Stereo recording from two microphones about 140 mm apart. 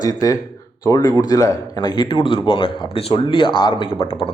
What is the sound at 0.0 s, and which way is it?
A man's voice, 25° left (ahead or behind).